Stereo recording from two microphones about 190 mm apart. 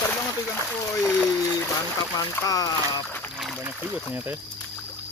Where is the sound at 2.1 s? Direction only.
20° left (ahead or behind).